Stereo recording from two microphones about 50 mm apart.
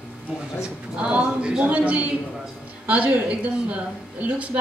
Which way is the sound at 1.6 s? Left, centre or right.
Right.